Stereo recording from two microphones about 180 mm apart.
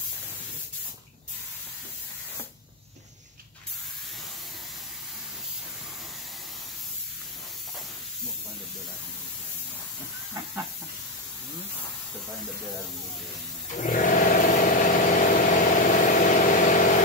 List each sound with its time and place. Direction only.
13.7 s vehicle: 45° left (ahead or behind)